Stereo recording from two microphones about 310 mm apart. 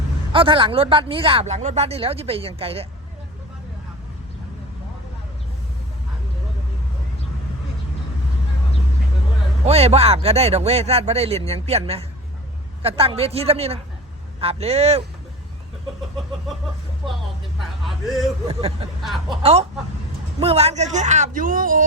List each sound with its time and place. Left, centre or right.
0.3 s speech: centre
9.6 s speech: centre
18.4 s speech: centre
19.0 s speech: centre
19.4 s speech: centre